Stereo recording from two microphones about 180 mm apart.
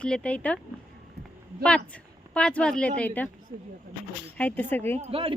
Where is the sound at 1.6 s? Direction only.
5° left (ahead or behind).